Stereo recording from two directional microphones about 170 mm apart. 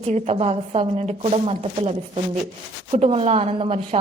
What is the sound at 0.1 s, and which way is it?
Speech, 40° right (ahead or behind).